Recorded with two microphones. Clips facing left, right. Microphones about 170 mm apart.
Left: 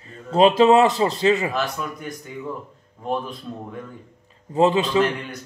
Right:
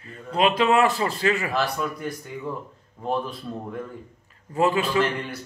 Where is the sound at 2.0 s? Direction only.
Centre (ahead or behind).